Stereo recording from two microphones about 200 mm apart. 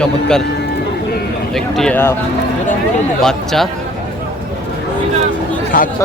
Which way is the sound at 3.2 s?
Centre (ahead or behind).